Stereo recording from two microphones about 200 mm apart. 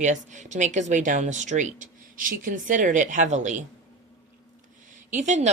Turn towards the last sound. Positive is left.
turn(degrees=-35)  # may be behind; listen again after turning